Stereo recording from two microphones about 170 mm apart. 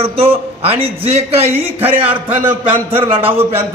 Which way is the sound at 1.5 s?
10° right (ahead or behind).